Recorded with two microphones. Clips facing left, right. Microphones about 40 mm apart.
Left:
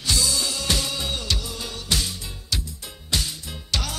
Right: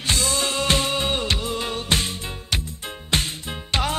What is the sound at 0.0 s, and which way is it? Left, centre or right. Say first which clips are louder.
Music: right 2 dB; right.